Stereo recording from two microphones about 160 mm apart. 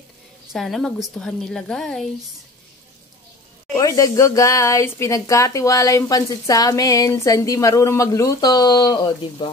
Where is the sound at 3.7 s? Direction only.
20° left (ahead or behind).